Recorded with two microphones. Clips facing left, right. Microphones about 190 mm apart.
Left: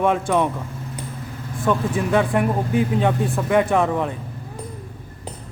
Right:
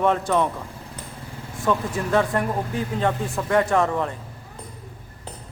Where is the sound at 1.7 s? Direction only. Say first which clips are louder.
Left 3 dB; 15° left (ahead or behind).